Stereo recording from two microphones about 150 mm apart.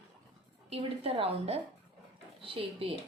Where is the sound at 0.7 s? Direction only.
40° right (ahead or behind).